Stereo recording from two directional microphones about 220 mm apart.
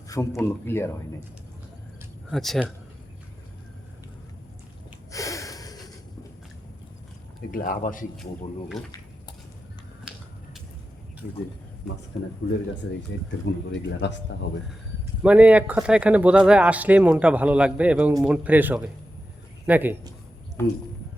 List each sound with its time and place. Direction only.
0.1 s speech: 15° left (ahead or behind)
2.3 s speech: centre (ahead or behind)
5.1 s a sound: 15° left (ahead or behind)
7.5 s speech: 40° left (ahead or behind)
10.0 s finger snapping: 5° right (ahead or behind)
13.4 s speech: 55° left (ahead or behind)
15.2 s speech: 5° right (ahead or behind)
20.6 s speech: 10° left (ahead or behind)